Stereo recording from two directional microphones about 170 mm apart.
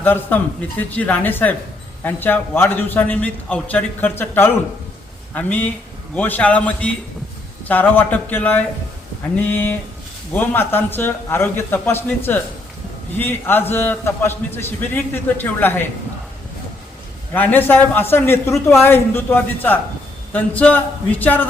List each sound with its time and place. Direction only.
0.0 s a man's voice: 10° left (ahead or behind)
17.3 s a man's voice: 10° left (ahead or behind)